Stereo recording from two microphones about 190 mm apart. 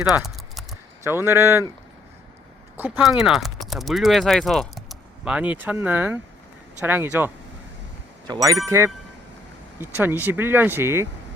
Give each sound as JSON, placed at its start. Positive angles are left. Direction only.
{"t": 0.0, "sound": "typing", "side_deg": 0}
{"t": 1.0, "sound": "speech", "side_deg": -15}
{"t": 2.7, "sound": "speech", "side_deg": -10}
{"t": 8.3, "sound": "speech", "side_deg": -20}
{"t": 9.8, "sound": "speech", "side_deg": -10}